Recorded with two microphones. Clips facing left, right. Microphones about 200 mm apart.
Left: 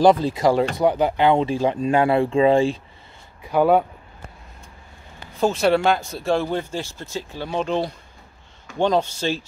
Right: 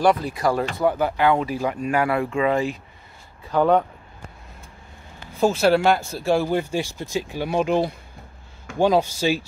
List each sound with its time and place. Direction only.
0.0 s speech: 25° left (ahead or behind)
3.4 s speech: 10° left (ahead or behind)
5.4 s speech: 5° right (ahead or behind)